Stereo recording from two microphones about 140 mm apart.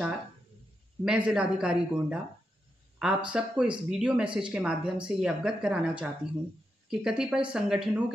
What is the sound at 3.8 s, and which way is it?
Speech, 5° right (ahead or behind).